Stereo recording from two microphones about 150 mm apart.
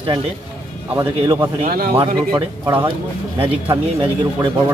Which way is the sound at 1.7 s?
90° right.